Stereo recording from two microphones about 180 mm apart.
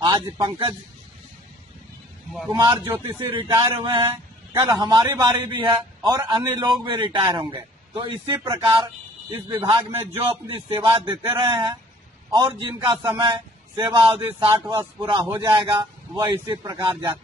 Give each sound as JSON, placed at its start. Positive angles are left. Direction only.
{"t": 0.0, "sound": "a man's voice", "side_deg": -25}
{"t": 2.5, "sound": "a man's voice", "side_deg": -20}